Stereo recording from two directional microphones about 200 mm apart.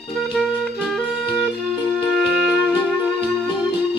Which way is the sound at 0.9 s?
Centre (ahead or behind).